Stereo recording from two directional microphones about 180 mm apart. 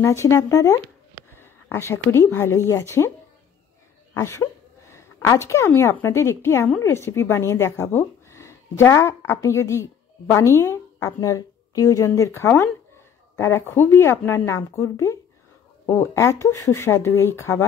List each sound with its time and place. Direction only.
0.0 s a woman's voice: 15° left (ahead or behind)
4.1 s a woman's voice: 15° left (ahead or behind)